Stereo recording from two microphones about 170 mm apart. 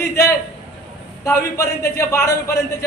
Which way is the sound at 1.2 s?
15° left (ahead or behind).